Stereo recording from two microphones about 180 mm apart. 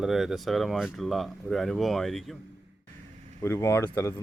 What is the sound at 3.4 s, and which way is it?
Speech, 15° left (ahead or behind).